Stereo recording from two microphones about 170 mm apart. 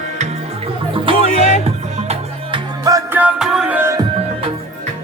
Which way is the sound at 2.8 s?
20° right (ahead or behind).